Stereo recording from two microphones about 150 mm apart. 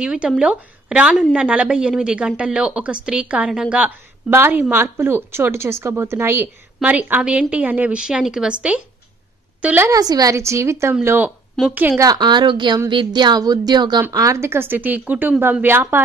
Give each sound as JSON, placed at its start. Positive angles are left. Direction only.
{"t": 0.0, "sound": "a woman's voice", "side_deg": -5}
{"t": 9.8, "sound": "a woman's voice", "side_deg": -25}
{"t": 12.0, "sound": "a woman's voice", "side_deg": -25}